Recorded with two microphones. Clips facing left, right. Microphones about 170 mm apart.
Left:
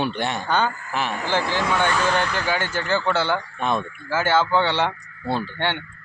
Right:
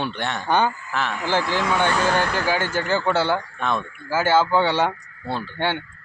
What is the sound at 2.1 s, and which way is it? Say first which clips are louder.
Speech: right 1 dB; 50° right (ahead or behind).